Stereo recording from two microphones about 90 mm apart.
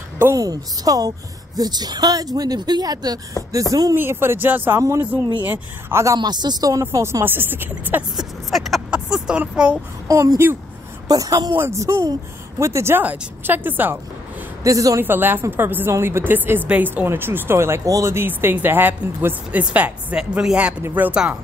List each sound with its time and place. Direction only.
0.4 s a woman's voice: 40° right (ahead or behind)
3.9 s speech: 25° right (ahead or behind)
4.7 s a woman's voice: 35° right (ahead or behind)
5.4 s speech: 25° right (ahead or behind)
6.1 s speech: 50° right (ahead or behind)
6.9 s speech: 35° right (ahead or behind)
8.2 s speech: centre (ahead or behind)
8.9 s a sound: 10° right (ahead or behind)
10.0 s a woman's voice: 40° right (ahead or behind)
11.5 s a woman's voice: 30° right (ahead or behind)
14.6 s speech: 40° right (ahead or behind)
15.0 s a woman's voice: 25° right (ahead or behind)